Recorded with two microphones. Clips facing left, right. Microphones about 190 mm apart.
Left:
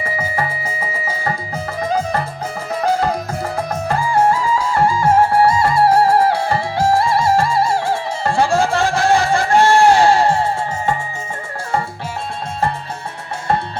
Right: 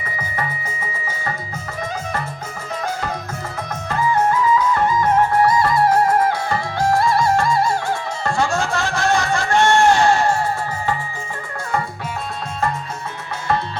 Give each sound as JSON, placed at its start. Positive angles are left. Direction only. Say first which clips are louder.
{"t": 1.0, "sound": "music", "louder": "left 4 dB", "side_deg": 35}